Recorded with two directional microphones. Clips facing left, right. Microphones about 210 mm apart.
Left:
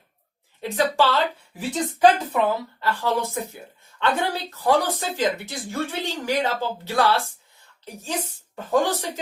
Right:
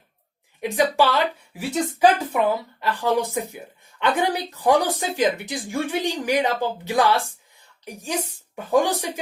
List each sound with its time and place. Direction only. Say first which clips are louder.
0.6 s speech: right 2 dB; 15° right (ahead or behind)